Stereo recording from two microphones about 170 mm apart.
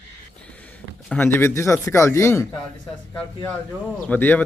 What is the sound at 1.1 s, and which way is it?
Speech, 10° left (ahead or behind).